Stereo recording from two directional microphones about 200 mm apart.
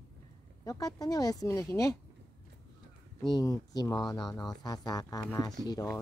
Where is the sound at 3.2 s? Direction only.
20° left (ahead or behind).